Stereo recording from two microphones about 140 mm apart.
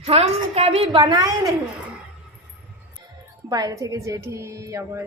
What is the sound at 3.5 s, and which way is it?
A woman's voice, 25° right (ahead or behind).